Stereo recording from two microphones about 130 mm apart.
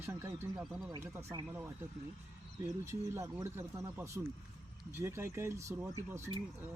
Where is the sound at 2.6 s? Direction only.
20° right (ahead or behind).